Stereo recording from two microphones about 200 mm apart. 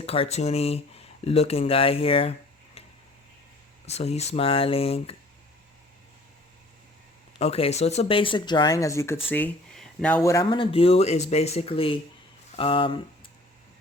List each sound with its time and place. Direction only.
0.0 s speech: 30° left (ahead or behind)
3.8 s speech: 30° left (ahead or behind)
7.3 s speech: 30° left (ahead or behind)